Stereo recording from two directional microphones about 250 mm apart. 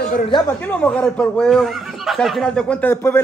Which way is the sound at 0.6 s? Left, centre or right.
Centre.